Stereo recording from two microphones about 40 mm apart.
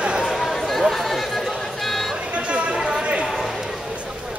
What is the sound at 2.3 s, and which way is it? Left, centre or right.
Chatter, right.